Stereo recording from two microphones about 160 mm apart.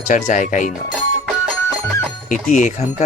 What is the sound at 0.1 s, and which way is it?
Speech, 50° left (ahead or behind).